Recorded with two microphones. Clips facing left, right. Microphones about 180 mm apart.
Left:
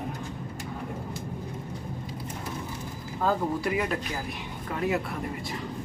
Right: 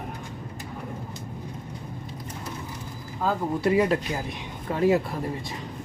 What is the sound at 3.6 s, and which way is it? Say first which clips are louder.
Speech: right 6 dB; 30° right (ahead or behind).